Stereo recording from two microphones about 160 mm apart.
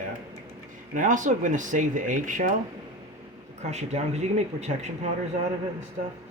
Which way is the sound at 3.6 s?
45° right (ahead or behind).